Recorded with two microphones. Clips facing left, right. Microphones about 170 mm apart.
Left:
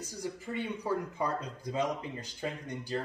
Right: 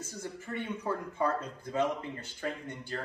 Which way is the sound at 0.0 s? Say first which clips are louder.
Left 2 dB; 15° left (ahead or behind).